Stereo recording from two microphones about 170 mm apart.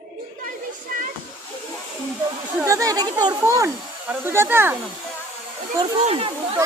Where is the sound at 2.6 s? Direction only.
20° right (ahead or behind).